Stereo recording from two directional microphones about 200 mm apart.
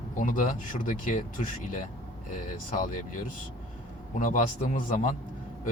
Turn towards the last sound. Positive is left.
turn(degrees=40)  # may be behind; listen again after turning